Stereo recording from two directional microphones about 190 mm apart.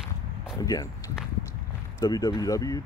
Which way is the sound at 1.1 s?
10° right (ahead or behind).